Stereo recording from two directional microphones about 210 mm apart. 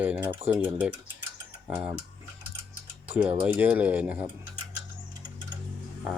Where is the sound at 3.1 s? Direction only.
5° right (ahead or behind).